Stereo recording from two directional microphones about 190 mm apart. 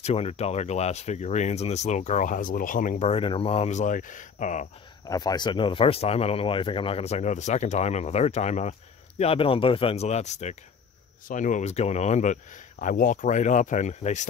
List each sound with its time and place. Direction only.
0.0 s speech: 30° left (ahead or behind)
5.0 s speech: 20° left (ahead or behind); by 14.2 s 40° left (ahead or behind)